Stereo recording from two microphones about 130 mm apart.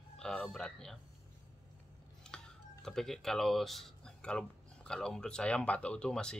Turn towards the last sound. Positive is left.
turn(degrees=5)  # may be behind; listen again after turning